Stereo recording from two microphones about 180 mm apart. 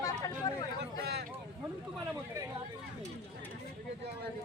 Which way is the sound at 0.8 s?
65° right (ahead or behind).